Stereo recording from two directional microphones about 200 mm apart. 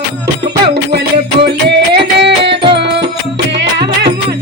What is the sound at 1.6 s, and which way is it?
Music, 55° right (ahead or behind).